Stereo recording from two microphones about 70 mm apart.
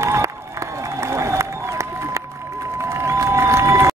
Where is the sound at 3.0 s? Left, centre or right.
Right.